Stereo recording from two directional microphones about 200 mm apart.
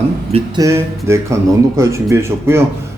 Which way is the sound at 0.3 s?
30° right (ahead or behind).